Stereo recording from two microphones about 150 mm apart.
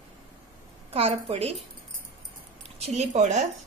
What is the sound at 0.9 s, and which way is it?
Speech, 40° right (ahead or behind).